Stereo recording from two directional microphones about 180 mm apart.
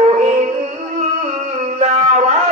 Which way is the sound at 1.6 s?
35° right (ahead or behind).